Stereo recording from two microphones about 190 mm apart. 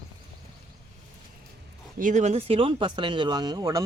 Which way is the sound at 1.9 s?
40° right (ahead or behind).